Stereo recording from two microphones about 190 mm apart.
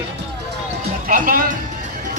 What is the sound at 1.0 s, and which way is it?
Speech, 45° right (ahead or behind).